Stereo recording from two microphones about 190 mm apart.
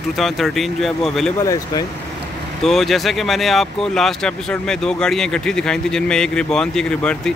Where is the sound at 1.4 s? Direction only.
15° left (ahead or behind).